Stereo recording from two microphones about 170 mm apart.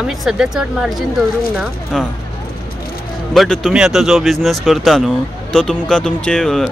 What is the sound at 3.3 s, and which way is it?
Speech, centre (ahead or behind).